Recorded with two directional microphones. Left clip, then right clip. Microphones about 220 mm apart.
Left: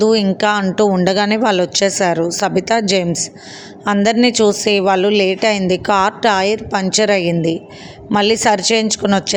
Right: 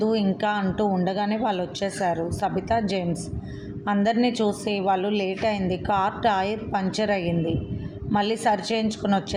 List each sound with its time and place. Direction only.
0.0 s a woman's voice: 40° left (ahead or behind)